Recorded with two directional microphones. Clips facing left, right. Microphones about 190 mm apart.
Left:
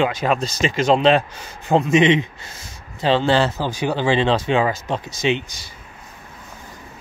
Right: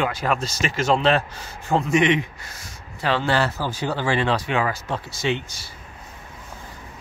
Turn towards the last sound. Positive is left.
turn(degrees=20)  # may be behind; listen again after turning